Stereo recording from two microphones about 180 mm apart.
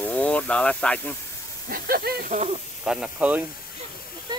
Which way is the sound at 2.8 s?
5° right (ahead or behind).